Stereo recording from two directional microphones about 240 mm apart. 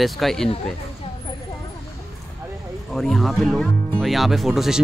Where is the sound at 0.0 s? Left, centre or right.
Centre.